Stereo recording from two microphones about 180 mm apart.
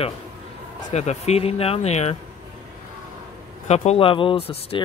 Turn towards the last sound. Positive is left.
turn(degrees=30)  # may be behind; listen again after turning